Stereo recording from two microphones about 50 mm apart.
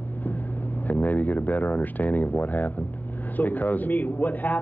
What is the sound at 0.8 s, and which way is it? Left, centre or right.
A man's voice, left.